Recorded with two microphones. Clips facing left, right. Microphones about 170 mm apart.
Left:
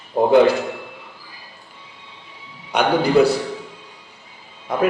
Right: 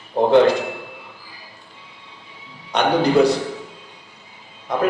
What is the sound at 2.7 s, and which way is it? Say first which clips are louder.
Speech: even; 10° left (ahead or behind).